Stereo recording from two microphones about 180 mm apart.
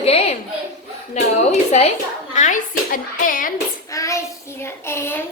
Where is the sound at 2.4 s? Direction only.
45° left (ahead or behind).